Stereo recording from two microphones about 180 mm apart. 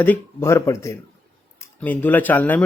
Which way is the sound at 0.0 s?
10° left (ahead or behind).